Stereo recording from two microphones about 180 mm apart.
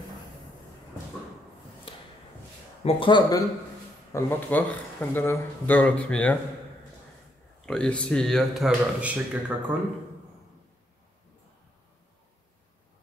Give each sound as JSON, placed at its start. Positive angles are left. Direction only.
{"t": 1.9, "sound": "a sound", "side_deg": 30}
{"t": 2.8, "sound": "speech", "side_deg": 25}
{"t": 4.1, "sound": "speech", "side_deg": 10}
{"t": 7.6, "sound": "speech", "side_deg": 5}